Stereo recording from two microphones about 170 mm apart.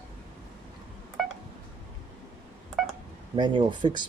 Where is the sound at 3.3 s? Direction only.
30° right (ahead or behind).